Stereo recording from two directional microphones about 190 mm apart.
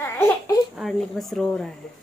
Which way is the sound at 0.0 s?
15° left (ahead or behind).